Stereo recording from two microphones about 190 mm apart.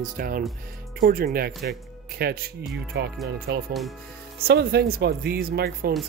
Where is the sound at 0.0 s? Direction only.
50° right (ahead or behind).